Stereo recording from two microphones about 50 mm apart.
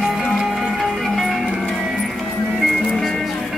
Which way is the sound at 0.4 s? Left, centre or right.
Centre.